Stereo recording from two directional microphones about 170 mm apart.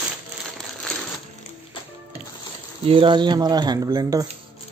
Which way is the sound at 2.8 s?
30° right (ahead or behind).